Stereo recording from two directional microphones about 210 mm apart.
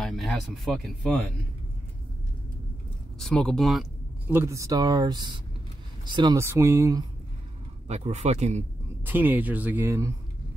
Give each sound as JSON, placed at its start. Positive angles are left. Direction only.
{"t": 0.0, "sound": "speech", "side_deg": 0}
{"t": 3.2, "sound": "speech", "side_deg": 0}
{"t": 4.3, "sound": "speech", "side_deg": -10}
{"t": 7.9, "sound": "speech", "side_deg": -30}
{"t": 9.0, "sound": "speech", "side_deg": -10}